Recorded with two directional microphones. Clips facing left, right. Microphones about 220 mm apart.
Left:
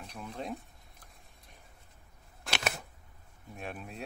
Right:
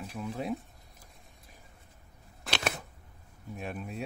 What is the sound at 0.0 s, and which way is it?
Speech, 5° right (ahead or behind).